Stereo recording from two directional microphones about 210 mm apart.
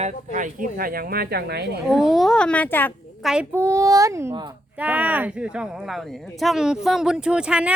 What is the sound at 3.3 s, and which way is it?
Speech, 10° right (ahead or behind).